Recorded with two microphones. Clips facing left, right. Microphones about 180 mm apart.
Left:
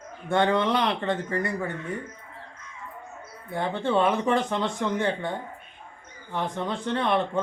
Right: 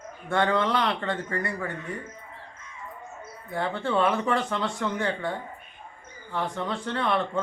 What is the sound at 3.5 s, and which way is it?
Speech, 20° left (ahead or behind).